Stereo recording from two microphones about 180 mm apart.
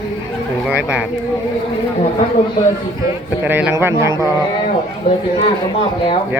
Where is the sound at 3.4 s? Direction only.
10° right (ahead or behind).